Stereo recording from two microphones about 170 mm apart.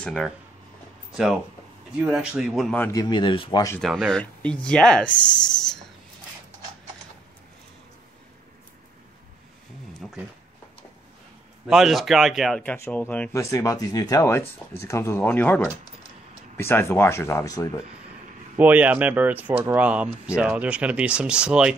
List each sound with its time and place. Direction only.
0.0 s speech: 5° left (ahead or behind)
2.8 s speech: 20° left (ahead or behind)
3.8 s speech: centre (ahead or behind)
10.0 s speech: 5° left (ahead or behind)
11.6 s speech: 5° right (ahead or behind); by 17.8 s 20° left (ahead or behind)
18.6 s speech: 10° right (ahead or behind)